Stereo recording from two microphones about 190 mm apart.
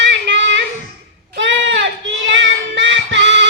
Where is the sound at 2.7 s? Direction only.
70° right (ahead or behind).